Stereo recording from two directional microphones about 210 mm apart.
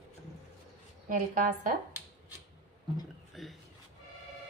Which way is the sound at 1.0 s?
40° right (ahead or behind).